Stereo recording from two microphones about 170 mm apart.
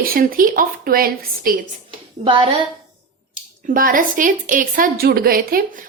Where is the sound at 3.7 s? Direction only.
55° right (ahead or behind).